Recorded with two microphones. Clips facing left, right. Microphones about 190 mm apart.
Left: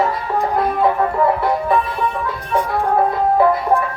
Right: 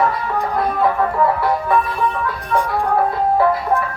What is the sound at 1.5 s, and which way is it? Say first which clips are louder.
Music: even; 25° left (ahead or behind).